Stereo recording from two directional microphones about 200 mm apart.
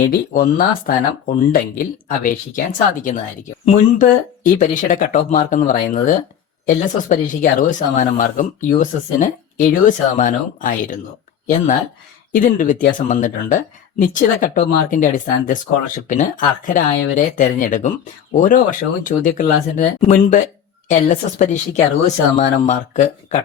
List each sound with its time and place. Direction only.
0.1 s speech: 45° left (ahead or behind)
16.6 s speech: 40° left (ahead or behind)